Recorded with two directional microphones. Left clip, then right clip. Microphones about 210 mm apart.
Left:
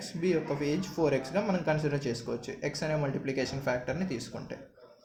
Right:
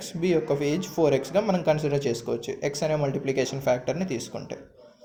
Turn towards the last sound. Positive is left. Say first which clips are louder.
# right 6 dB
turn(degrees=-35)  # may be behind; listen again after turning